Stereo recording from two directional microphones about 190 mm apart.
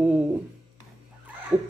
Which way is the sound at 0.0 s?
5° right (ahead or behind).